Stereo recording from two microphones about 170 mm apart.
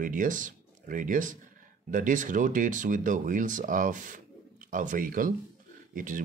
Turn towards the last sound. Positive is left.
turn(degrees=-50)  # may be behind; listen again after turning